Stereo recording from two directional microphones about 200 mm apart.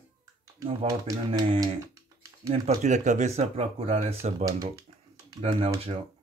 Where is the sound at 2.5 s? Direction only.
35° right (ahead or behind).